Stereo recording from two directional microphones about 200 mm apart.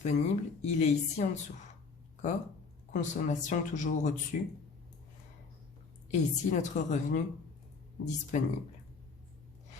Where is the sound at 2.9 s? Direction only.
40° left (ahead or behind).